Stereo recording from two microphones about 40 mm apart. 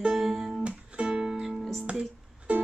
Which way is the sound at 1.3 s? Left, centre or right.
Centre.